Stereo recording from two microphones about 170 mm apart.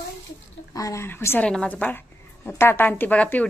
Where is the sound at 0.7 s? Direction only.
20° left (ahead or behind).